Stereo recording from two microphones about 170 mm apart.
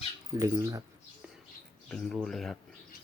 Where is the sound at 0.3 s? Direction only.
20° right (ahead or behind).